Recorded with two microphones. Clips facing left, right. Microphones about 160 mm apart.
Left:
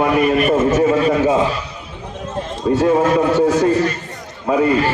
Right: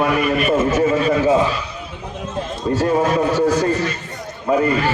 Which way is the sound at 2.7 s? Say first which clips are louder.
Left 3 dB; 25° left (ahead or behind).